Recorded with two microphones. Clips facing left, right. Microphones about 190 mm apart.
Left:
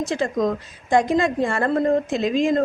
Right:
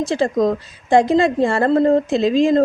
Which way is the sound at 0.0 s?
30° right (ahead or behind).